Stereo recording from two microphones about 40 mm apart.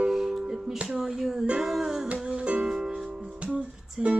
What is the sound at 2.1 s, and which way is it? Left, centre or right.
Music, right.